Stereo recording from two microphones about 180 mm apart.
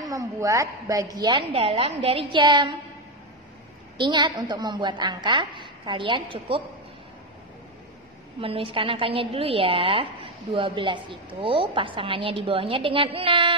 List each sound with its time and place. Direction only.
0.0 s a woman's voice: 20° right (ahead or behind)
4.0 s a woman's voice: 25° right (ahead or behind)
8.4 s a woman's voice: 30° right (ahead or behind)